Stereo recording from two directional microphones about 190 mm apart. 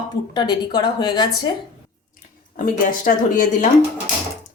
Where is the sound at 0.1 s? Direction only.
20° left (ahead or behind).